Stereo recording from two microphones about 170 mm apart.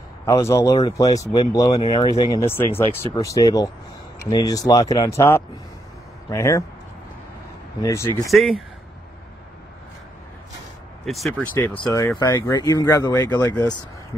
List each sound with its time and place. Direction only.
0.2 s speech: 15° left (ahead or behind)
7.8 s speech: 15° left (ahead or behind)
8.3 s speech: centre (ahead or behind)
11.1 s speech: centre (ahead or behind); by 13.6 s 20° left (ahead or behind)